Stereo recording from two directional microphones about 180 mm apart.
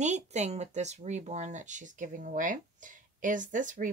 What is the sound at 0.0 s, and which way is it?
A woman's voice, 40° right (ahead or behind).